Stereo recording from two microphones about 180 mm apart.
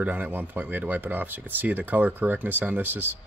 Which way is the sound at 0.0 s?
10° right (ahead or behind).